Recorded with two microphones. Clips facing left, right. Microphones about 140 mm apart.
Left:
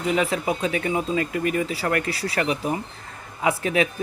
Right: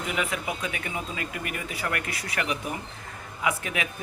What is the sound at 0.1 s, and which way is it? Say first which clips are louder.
A man's voice: left 8 dB; 30° left (ahead or behind).